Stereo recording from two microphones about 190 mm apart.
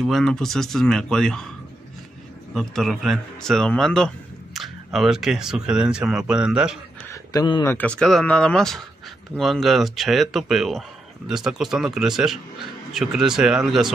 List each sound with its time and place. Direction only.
0.0 s speech: centre (ahead or behind)
2.5 s speech: centre (ahead or behind)
7.1 s speech: 20° left (ahead or behind)
7.6 s speech: 10° left (ahead or behind)